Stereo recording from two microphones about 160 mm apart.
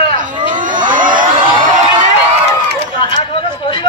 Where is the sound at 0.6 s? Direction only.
55° right (ahead or behind).